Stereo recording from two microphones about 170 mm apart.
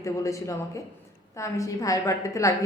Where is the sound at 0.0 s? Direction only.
20° left (ahead or behind).